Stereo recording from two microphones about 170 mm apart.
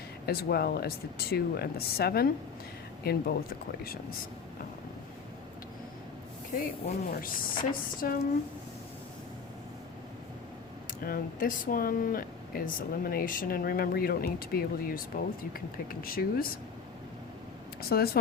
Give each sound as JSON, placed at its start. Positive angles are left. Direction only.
{"t": 0.3, "sound": "speech", "side_deg": 65}
{"t": 6.6, "sound": "speech", "side_deg": 55}
{"t": 11.0, "sound": "speech", "side_deg": 55}
{"t": 17.7, "sound": "speech", "side_deg": 65}